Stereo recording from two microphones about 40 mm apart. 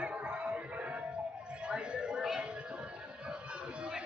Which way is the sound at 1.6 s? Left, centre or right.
Right.